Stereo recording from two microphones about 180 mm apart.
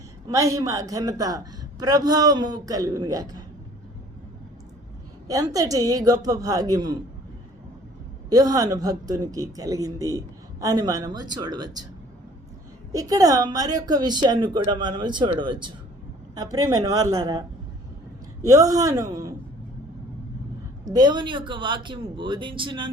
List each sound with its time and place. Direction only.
0.3 s speech: 20° right (ahead or behind)
5.3 s speech: 20° right (ahead or behind)
8.3 s speech: 20° right (ahead or behind)
12.9 s speech: 20° right (ahead or behind)
18.4 s speech: 20° right (ahead or behind)
20.8 s speech: 25° right (ahead or behind)